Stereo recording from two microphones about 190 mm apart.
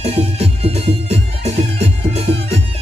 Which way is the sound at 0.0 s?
35° right (ahead or behind).